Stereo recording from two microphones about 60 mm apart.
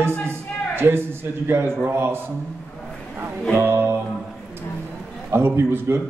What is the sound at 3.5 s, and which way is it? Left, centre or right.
Speech, right.